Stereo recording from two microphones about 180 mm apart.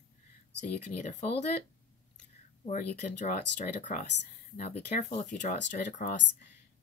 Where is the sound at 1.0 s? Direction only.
40° left (ahead or behind).